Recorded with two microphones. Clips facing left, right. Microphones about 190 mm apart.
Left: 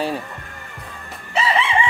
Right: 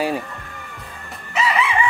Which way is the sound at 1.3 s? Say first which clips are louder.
Left 1 dB; 30° left (ahead or behind).